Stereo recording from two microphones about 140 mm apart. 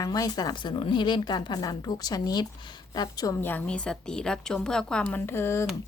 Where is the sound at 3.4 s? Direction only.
10° left (ahead or behind).